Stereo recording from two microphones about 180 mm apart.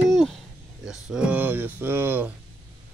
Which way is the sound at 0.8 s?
5° right (ahead or behind).